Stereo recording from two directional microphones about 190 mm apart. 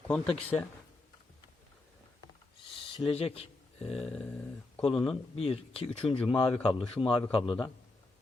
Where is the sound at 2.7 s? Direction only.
25° left (ahead or behind).